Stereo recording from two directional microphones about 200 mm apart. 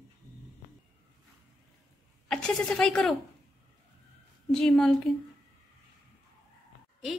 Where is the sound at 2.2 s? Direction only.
5° left (ahead or behind).